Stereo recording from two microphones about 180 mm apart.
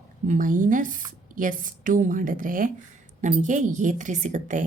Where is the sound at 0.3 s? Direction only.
45° right (ahead or behind).